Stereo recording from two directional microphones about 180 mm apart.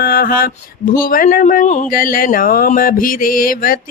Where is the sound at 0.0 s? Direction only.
55° left (ahead or behind).